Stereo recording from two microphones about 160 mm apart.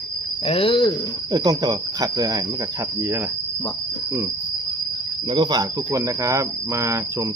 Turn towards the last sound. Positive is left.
turn(degrees=-20)  # may be behind; listen again after turning